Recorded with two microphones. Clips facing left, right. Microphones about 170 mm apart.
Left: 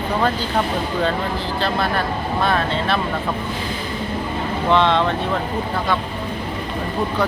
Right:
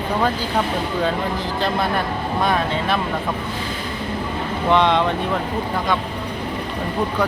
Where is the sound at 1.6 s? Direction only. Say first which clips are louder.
Even; 20° right (ahead or behind).